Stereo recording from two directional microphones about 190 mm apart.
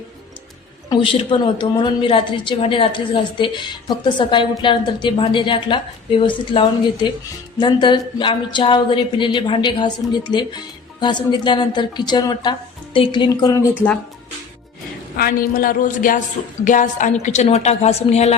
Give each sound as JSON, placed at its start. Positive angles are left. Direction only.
{"t": 0.9, "sound": "a woman's voice", "side_deg": 25}
{"t": 15.1, "sound": "a woman's voice", "side_deg": 50}